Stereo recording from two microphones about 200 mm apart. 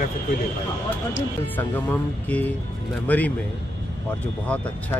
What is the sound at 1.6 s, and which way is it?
Speech, 10° left (ahead or behind).